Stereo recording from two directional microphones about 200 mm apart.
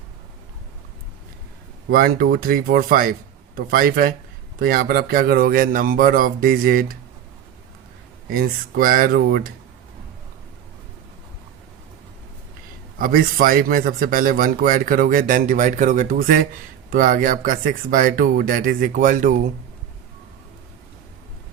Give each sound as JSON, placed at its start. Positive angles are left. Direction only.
{"t": 1.9, "sound": "a man's voice", "side_deg": -50}
{"t": 8.3, "sound": "a man's voice", "side_deg": -50}
{"t": 13.0, "sound": "a man's voice", "side_deg": -45}